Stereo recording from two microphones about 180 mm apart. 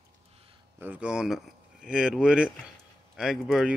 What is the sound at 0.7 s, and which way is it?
Speech, 10° right (ahead or behind).